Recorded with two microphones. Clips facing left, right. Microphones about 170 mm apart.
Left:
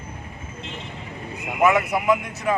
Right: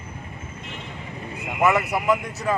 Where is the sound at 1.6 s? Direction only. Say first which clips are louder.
Left 1 dB; centre (ahead or behind).